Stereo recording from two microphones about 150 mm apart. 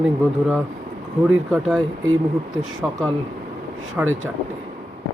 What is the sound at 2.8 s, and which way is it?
Speech, 10° right (ahead or behind).